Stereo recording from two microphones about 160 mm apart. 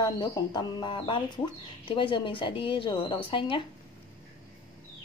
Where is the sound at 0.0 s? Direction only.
25° left (ahead or behind).